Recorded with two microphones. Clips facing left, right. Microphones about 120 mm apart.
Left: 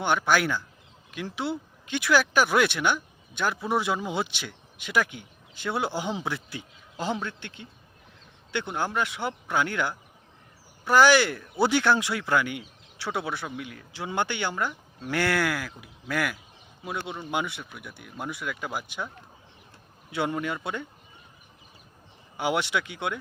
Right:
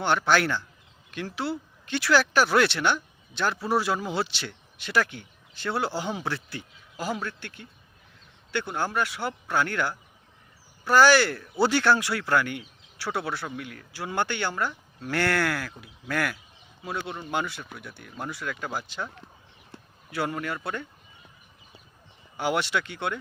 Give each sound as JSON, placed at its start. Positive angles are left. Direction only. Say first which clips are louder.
{"t": 0.0, "sound": "speech", "louder": "right 1 dB", "side_deg": 15}
{"t": 22.4, "sound": "speech", "louder": "even", "side_deg": 15}